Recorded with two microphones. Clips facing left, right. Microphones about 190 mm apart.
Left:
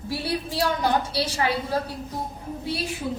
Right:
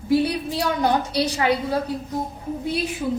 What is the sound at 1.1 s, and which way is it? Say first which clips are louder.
Speech: right 4 dB; 20° right (ahead or behind).